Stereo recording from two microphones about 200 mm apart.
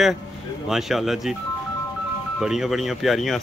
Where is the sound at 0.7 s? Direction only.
Centre (ahead or behind).